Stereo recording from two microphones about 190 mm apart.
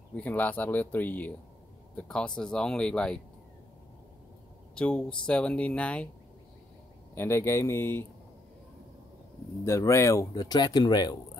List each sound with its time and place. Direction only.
0.1 s speech: 10° left (ahead or behind)
4.7 s speech: 5° left (ahead or behind)
7.2 s speech: 15° left (ahead or behind)
9.7 s speech: 15° left (ahead or behind)